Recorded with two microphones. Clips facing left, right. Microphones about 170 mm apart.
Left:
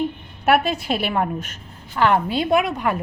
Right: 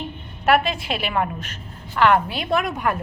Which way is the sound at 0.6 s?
45° left (ahead or behind).